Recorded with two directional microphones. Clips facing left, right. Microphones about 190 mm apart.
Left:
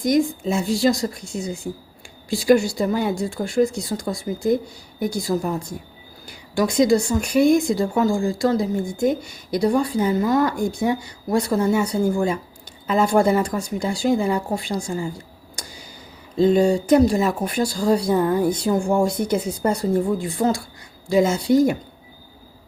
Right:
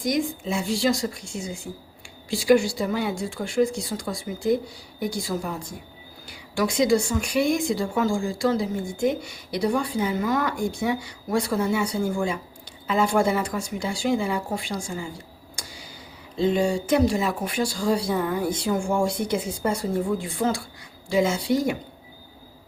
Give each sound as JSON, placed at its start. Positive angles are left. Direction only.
{"t": 0.0, "sound": "a woman's voice", "side_deg": 45}
{"t": 16.4, "sound": "speech", "side_deg": 40}